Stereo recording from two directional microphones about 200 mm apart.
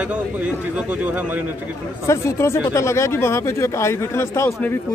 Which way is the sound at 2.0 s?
15° left (ahead or behind).